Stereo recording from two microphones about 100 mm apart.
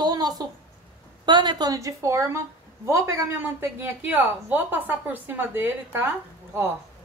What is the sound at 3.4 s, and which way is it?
A woman's voice, 20° right (ahead or behind).